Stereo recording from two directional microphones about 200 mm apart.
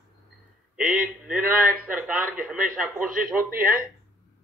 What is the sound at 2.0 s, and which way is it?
A man's voice, 5° right (ahead or behind).